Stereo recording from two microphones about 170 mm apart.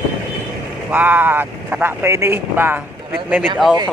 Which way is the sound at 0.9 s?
10° right (ahead or behind).